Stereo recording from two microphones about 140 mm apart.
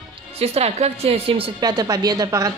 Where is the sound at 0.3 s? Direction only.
45° right (ahead or behind).